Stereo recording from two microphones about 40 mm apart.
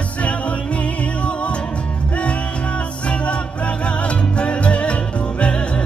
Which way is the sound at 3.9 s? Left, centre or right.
Left.